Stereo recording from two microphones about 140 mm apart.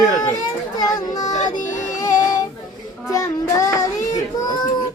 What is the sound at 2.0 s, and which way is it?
Music, 25° left (ahead or behind).